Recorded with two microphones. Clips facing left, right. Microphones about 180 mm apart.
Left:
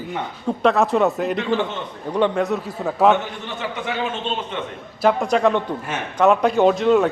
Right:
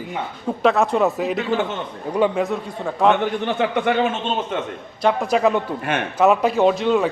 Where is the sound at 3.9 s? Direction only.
60° right (ahead or behind).